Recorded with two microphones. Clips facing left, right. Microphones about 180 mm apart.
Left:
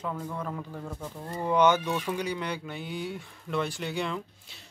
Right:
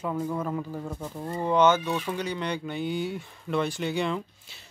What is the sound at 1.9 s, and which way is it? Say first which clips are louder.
Speech: right 1 dB; 15° right (ahead or behind).